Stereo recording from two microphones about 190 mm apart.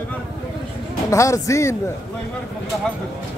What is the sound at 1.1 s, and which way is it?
Speech, 15° left (ahead or behind).